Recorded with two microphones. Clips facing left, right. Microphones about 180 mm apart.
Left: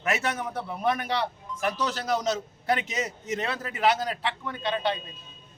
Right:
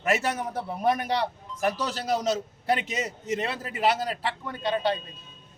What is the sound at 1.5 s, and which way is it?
A man's voice, 35° right (ahead or behind).